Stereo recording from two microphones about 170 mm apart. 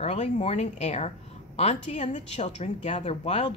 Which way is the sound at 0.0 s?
40° left (ahead or behind).